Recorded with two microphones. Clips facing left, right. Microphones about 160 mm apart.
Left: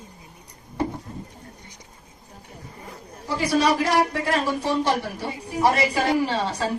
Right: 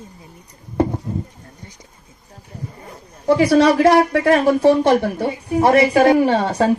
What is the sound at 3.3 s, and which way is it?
Speech, 60° right (ahead or behind).